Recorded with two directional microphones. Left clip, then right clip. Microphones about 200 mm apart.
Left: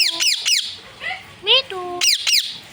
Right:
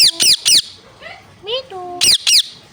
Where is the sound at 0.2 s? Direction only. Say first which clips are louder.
Right 6 dB; 40° right (ahead or behind).